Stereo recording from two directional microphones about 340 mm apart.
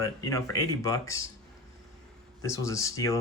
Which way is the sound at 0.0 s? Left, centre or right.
Centre.